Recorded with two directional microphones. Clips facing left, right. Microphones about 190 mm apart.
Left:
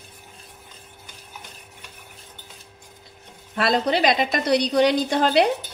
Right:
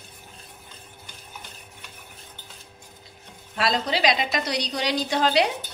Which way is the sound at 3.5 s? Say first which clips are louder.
Left 4 dB; 55° left (ahead or behind).